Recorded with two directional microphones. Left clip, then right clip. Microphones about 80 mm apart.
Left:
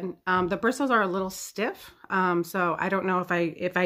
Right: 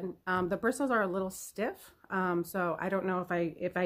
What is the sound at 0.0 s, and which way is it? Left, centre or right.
Speech, left.